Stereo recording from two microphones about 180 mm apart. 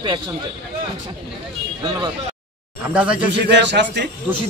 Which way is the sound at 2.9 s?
5° right (ahead or behind).